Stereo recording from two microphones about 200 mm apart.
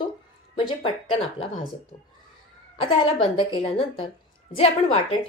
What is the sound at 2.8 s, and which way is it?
A woman's voice, 25° left (ahead or behind).